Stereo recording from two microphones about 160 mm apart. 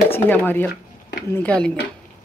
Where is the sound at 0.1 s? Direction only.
10° left (ahead or behind).